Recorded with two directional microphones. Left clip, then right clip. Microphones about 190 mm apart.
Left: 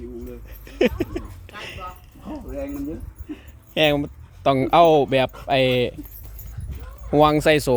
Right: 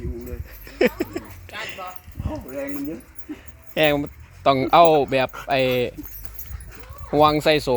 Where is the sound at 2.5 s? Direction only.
10° right (ahead or behind).